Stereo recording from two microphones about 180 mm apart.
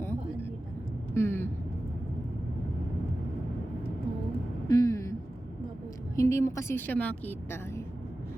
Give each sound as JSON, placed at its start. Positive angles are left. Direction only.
{"t": 0.0, "sound": "vehicle", "side_deg": 10}
{"t": 1.1, "sound": "a woman's voice", "side_deg": 15}
{"t": 4.7, "sound": "a sound", "side_deg": 20}
{"t": 6.1, "sound": "a woman's voice", "side_deg": 15}